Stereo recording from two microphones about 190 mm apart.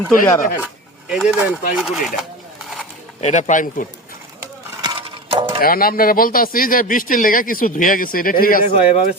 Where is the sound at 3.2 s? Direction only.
35° left (ahead or behind).